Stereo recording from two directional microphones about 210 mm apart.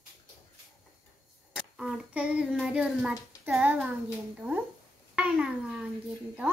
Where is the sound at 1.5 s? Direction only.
5° right (ahead or behind).